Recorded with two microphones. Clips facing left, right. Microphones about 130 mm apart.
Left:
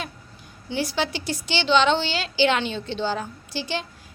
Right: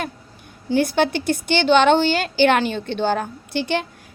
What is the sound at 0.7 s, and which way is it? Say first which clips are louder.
A woman's voice: right 8 dB; 55° right (ahead or behind).